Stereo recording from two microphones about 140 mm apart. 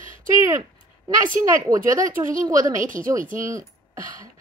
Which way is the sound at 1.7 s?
25° right (ahead or behind).